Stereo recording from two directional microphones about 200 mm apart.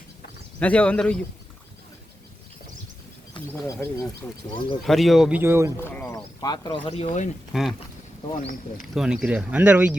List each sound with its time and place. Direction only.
0.6 s speech: 5° left (ahead or behind)
3.5 s speech: 15° left (ahead or behind)
4.8 s speech: centre (ahead or behind)
5.7 s a sound: 10° left (ahead or behind)
6.4 s speech: 20° left (ahead or behind)
7.5 s speech: centre (ahead or behind)
8.3 s speech: 30° left (ahead or behind)
9.0 s speech: 5° right (ahead or behind)